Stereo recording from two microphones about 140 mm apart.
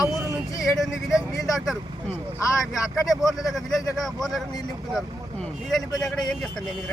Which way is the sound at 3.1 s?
Centre (ahead or behind).